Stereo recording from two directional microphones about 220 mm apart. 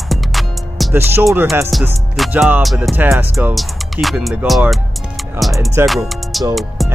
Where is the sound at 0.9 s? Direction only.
10° right (ahead or behind).